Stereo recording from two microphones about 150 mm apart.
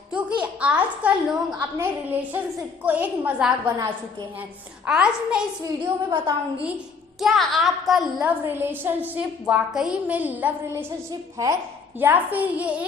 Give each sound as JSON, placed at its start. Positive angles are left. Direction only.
{"t": 0.1, "sound": "a woman's voice", "side_deg": -10}
{"t": 4.9, "sound": "a woman's voice", "side_deg": -5}
{"t": 5.6, "sound": "a woman's voice", "side_deg": -25}
{"t": 7.2, "sound": "a woman's voice", "side_deg": 0}